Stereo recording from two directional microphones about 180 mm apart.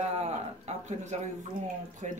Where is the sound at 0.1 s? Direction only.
40° right (ahead or behind).